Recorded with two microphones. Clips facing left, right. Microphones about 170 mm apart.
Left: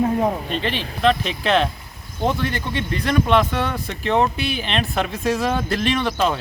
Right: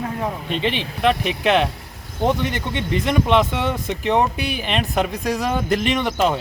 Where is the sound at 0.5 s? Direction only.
15° right (ahead or behind).